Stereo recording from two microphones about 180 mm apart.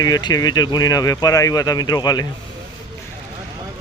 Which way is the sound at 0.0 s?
20° left (ahead or behind).